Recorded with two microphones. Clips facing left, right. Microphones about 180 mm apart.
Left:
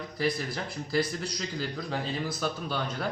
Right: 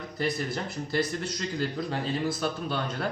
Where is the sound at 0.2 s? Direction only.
Centre (ahead or behind).